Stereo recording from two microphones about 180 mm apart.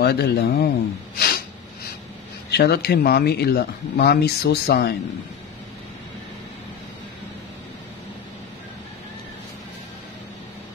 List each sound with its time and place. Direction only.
0.0 s speech: 65° left (ahead or behind)
1.1 s snort: 55° left (ahead or behind)
2.5 s speech: 60° left (ahead or behind)